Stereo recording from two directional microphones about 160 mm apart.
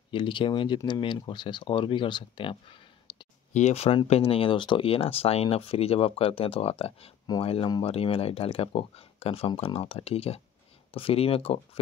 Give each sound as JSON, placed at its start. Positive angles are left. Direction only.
{"t": 0.1, "sound": "speech", "side_deg": 30}